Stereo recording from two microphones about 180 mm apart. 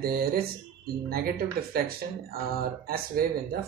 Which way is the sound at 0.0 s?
55° right (ahead or behind).